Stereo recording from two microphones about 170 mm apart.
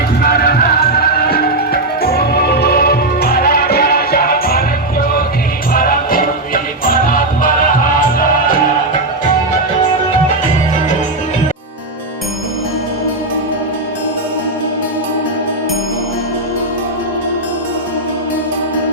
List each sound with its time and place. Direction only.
0.2 s music: 65° left (ahead or behind)
5.7 s music: 55° left (ahead or behind)